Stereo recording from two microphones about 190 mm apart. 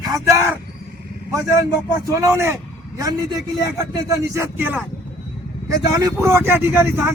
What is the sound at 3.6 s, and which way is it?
Speech, 15° right (ahead or behind).